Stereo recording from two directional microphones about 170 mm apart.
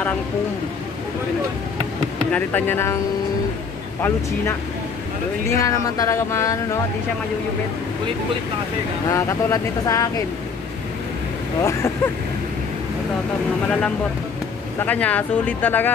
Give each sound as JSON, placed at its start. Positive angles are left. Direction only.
{"t": 2.3, "sound": "speech", "side_deg": 10}
{"t": 5.6, "sound": "speech", "side_deg": 20}
{"t": 9.1, "sound": "speech", "side_deg": 20}
{"t": 11.6, "sound": "speech", "side_deg": 15}
{"t": 13.7, "sound": "speech", "side_deg": 5}